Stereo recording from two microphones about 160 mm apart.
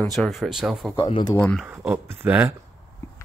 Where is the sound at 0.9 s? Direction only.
30° left (ahead or behind).